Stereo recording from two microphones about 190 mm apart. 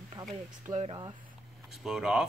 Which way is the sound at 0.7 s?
30° right (ahead or behind).